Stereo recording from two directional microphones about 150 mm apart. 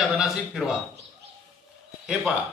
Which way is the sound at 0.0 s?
Centre (ahead or behind).